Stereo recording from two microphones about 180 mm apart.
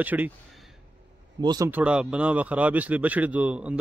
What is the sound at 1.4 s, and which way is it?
Speech, 25° right (ahead or behind).